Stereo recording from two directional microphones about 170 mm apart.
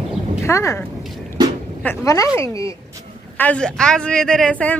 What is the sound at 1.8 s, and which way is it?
Speech, 20° left (ahead or behind).